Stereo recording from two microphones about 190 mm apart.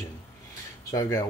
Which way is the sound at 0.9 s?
15° left (ahead or behind).